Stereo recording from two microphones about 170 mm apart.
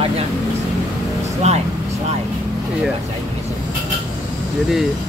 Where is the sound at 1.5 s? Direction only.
40° right (ahead or behind).